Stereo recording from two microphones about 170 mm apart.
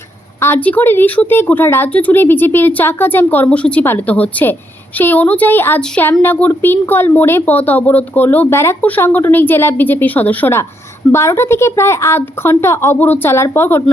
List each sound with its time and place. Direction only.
0.3 s speech: 15° left (ahead or behind)